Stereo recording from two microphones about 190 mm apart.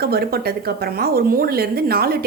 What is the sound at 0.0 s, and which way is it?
A woman's voice, 55° right (ahead or behind).